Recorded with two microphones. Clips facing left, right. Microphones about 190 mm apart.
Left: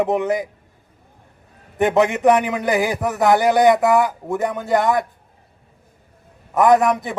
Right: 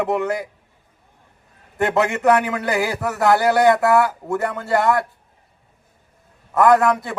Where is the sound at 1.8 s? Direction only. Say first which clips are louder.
Left 3 dB; 20° left (ahead or behind).